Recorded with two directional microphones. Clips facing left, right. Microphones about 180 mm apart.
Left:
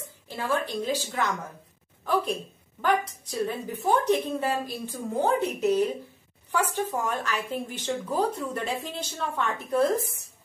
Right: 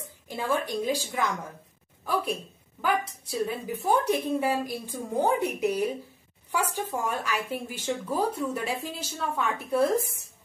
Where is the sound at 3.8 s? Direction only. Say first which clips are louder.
Left 2 dB; 10° right (ahead or behind).